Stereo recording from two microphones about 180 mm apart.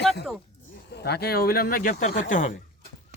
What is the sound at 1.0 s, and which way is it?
Speech, 60° left (ahead or behind).